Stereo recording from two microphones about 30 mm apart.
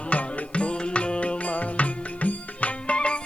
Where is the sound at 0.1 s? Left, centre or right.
Left.